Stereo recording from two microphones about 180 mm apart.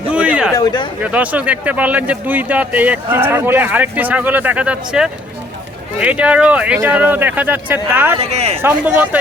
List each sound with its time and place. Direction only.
0.1 s a sound: 5° right (ahead or behind)
0.5 s speech: 25° left (ahead or behind)
1.0 s a man's voice: 5° right (ahead or behind)
8.2 s speech: 35° right (ahead or behind)
8.6 s a man's voice: 10° right (ahead or behind)